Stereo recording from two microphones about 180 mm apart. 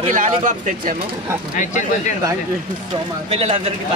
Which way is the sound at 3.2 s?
35° right (ahead or behind).